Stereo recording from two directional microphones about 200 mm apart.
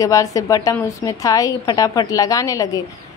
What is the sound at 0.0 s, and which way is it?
A woman's voice, 15° left (ahead or behind).